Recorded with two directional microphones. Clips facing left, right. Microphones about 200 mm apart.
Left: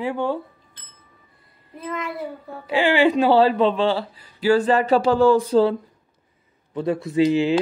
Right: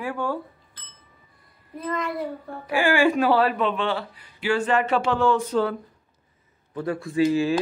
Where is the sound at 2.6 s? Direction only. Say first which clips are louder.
Left 2 dB; 20° left (ahead or behind).